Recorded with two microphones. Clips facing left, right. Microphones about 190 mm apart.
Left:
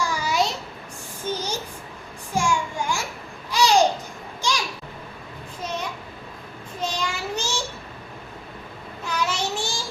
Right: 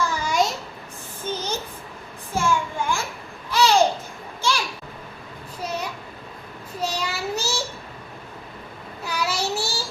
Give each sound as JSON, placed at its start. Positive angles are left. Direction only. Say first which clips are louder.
{"t": 0.0, "sound": "a sound", "louder": "right 1 dB", "side_deg": 10}
{"t": 2.3, "sound": "child singing", "louder": "right 1 dB", "side_deg": 15}
{"t": 3.5, "sound": "babbling", "louder": "even", "side_deg": 15}
{"t": 6.7, "sound": "child singing", "louder": "right 1 dB", "side_deg": -5}
{"t": 9.0, "sound": "child singing", "louder": "even", "side_deg": -10}